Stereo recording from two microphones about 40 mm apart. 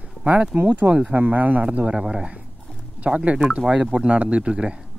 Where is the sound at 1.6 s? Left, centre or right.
Right.